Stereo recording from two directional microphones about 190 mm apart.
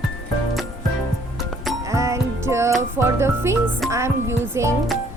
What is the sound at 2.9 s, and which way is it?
Speech, 15° right (ahead or behind).